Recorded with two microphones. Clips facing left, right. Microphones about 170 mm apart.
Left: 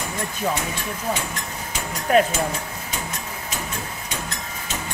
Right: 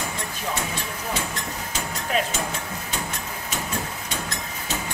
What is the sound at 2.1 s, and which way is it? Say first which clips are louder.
Speech: left 8 dB; 50° left (ahead or behind).